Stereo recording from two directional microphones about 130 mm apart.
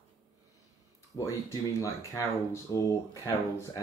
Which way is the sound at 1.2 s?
25° left (ahead or behind).